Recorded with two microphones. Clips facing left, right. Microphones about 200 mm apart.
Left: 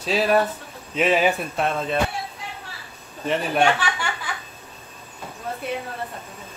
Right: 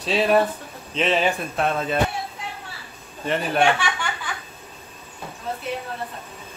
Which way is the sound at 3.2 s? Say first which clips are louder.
Even; centre (ahead or behind).